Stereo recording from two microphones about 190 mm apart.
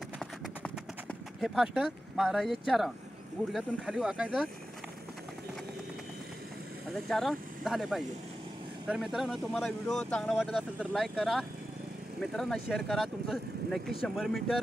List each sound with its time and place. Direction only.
1.4 s speech: centre (ahead or behind)
6.9 s speech: centre (ahead or behind)